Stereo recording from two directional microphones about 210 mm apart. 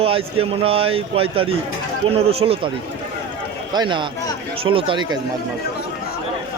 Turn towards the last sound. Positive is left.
turn(degrees=-20)  # may be behind; listen again after turning